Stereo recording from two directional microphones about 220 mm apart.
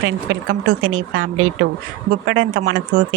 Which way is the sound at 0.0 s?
55° right (ahead or behind).